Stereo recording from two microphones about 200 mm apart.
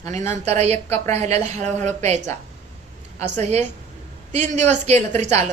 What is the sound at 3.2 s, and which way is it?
A woman's voice, 35° right (ahead or behind).